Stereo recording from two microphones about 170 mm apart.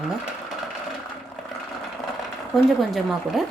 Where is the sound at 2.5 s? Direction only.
Centre (ahead or behind).